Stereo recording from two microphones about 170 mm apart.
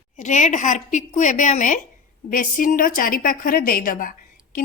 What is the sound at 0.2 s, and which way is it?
A woman's voice, 45° left (ahead or behind).